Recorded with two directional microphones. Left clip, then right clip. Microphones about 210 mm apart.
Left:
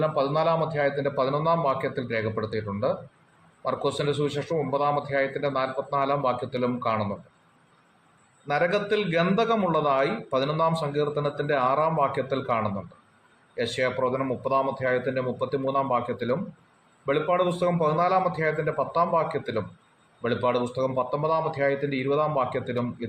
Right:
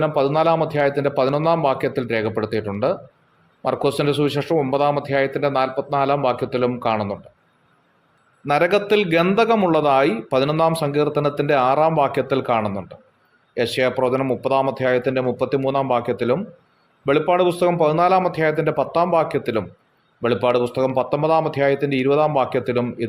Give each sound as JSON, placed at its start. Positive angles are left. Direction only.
{"t": 0.0, "sound": "speech", "side_deg": -45}
{"t": 8.4, "sound": "speech", "side_deg": -50}
{"t": 13.7, "sound": "speech", "side_deg": -45}